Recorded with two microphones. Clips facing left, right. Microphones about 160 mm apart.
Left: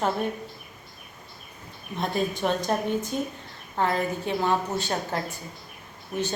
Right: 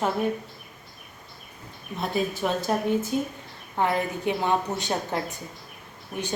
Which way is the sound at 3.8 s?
15° right (ahead or behind).